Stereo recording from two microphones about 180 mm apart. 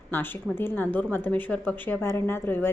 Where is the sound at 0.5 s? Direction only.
10° left (ahead or behind).